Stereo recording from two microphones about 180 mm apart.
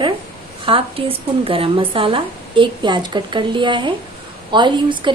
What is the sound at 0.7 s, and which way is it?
Speech, 30° right (ahead or behind).